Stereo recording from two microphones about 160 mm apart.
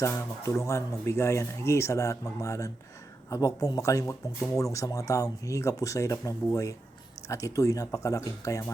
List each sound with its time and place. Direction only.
0.0 s speech: 20° left (ahead or behind)